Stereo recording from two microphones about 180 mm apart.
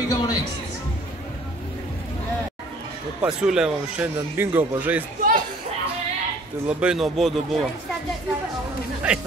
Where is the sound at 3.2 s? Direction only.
5° right (ahead or behind).